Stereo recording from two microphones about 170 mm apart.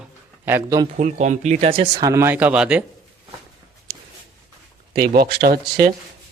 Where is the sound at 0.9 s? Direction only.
45° right (ahead or behind).